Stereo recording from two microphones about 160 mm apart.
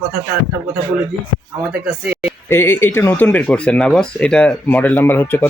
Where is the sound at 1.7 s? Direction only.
10° right (ahead or behind).